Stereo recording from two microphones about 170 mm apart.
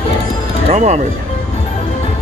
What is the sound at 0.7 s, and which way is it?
Speech, 40° right (ahead or behind).